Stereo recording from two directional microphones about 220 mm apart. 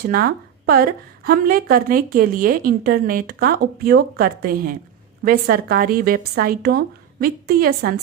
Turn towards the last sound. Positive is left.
turn(degrees=-45)  # may be behind; listen again after turning